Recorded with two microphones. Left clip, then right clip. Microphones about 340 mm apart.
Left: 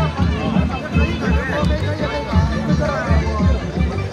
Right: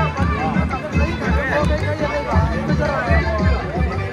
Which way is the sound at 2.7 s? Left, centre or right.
Right.